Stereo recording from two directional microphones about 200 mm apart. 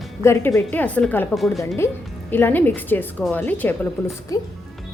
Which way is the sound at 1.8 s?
15° left (ahead or behind).